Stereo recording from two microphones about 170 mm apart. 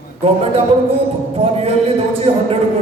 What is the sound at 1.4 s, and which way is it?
A man's voice, 35° right (ahead or behind).